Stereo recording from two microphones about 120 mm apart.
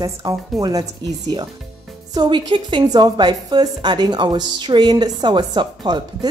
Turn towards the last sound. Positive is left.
turn(degrees=-40)  # may be behind; listen again after turning